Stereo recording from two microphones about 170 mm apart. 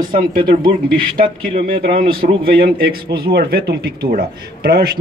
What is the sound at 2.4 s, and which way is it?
Speech, 60° right (ahead or behind).